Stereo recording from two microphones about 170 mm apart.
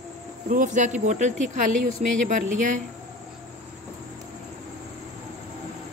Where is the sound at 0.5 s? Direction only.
50° right (ahead or behind).